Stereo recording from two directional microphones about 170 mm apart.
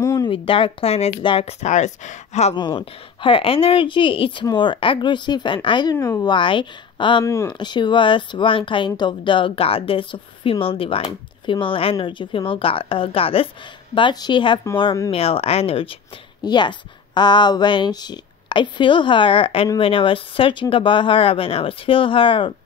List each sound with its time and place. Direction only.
0.0 s a sound: 20° left (ahead or behind)
0.3 s speech: 30° left (ahead or behind)
2.5 s a woman's voice: 30° left (ahead or behind)
5.9 s speech: 15° left (ahead or behind)
6.3 s a woman's voice: 30° left (ahead or behind)